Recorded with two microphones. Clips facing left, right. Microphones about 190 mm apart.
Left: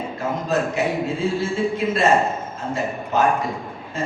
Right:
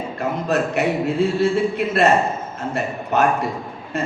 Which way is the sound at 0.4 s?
65° right (ahead or behind).